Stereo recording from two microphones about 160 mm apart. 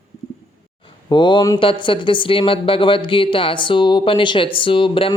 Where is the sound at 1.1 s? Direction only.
30° left (ahead or behind).